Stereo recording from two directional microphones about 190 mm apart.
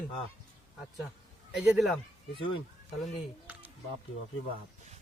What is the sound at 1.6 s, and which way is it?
Speech, centre (ahead or behind).